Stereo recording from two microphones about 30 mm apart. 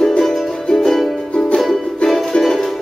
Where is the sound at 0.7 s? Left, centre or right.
Centre.